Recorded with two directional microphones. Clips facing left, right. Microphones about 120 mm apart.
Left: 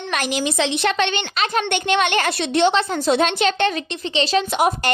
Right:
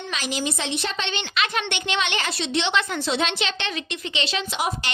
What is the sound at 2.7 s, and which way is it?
A woman's voice, 40° left (ahead or behind).